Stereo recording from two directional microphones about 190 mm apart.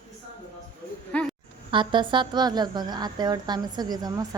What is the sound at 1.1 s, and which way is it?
Speech, 5° left (ahead or behind).